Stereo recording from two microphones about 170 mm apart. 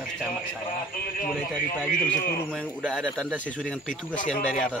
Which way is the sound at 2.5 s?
5° left (ahead or behind).